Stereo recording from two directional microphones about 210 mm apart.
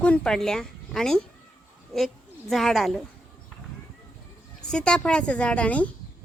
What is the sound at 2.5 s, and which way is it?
Speech, centre (ahead or behind).